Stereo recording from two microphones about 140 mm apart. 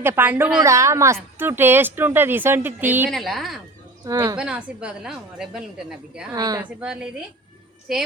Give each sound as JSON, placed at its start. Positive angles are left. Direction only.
{"t": 0.0, "sound": "a woman's voice", "side_deg": -15}
{"t": 3.1, "sound": "speech", "side_deg": 0}
{"t": 4.0, "sound": "speech", "side_deg": -25}
{"t": 4.4, "sound": "speech", "side_deg": -5}
{"t": 6.3, "sound": "speech", "side_deg": -25}
{"t": 6.7, "sound": "speech", "side_deg": -5}